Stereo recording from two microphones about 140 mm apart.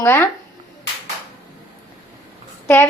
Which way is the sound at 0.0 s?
15° left (ahead or behind).